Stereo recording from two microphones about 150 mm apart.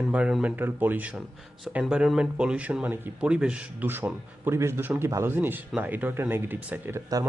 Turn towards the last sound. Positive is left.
turn(degrees=-15)  # may be behind; listen again after turning